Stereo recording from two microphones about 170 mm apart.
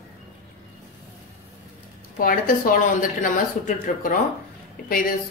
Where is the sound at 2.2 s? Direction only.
55° left (ahead or behind).